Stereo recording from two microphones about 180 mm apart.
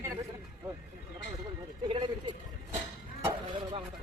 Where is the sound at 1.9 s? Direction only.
30° right (ahead or behind).